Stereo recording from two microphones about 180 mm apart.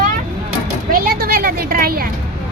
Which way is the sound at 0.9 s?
55° right (ahead or behind).